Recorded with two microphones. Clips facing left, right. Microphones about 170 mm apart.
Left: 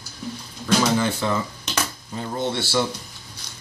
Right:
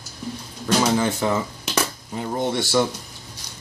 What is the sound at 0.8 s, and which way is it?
Speech, 15° right (ahead or behind).